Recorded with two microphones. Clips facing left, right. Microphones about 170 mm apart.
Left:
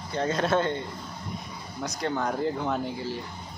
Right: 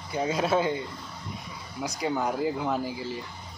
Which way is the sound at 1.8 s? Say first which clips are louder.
Right 1 dB; 10° right (ahead or behind).